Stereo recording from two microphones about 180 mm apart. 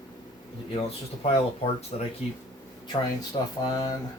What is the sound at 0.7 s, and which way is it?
Speech, 35° left (ahead or behind).